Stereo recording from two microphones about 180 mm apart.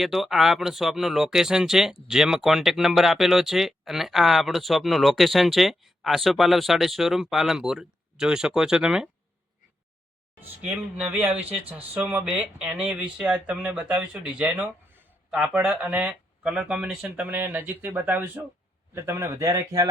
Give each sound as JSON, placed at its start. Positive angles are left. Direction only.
{"t": 0.0, "sound": "speech", "side_deg": 0}
{"t": 10.4, "sound": "speech", "side_deg": -10}